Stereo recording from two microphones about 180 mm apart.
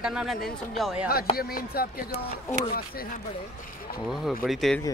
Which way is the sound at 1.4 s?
55° left (ahead or behind).